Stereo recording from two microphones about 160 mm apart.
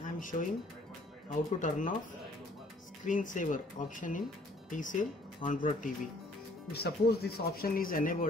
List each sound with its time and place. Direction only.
0.2 s speech: 55° left (ahead or behind)
3.1 s speech: 55° left (ahead or behind)
6.7 s speech: 85° left; by 8.3 s 60° left (ahead or behind)